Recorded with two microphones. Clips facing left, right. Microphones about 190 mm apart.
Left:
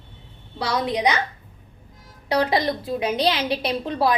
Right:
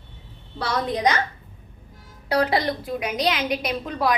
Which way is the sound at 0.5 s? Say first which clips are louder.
Left 1 dB; 10° left (ahead or behind).